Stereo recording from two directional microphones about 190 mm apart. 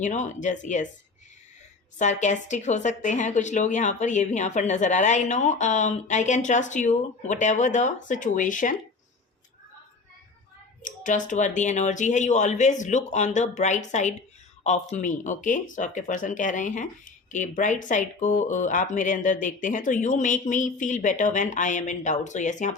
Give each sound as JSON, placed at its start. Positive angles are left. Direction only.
{"t": 0.0, "sound": "speech", "side_deg": 40}
{"t": 2.0, "sound": "speech", "side_deg": 40}
{"t": 10.8, "sound": "speech", "side_deg": 40}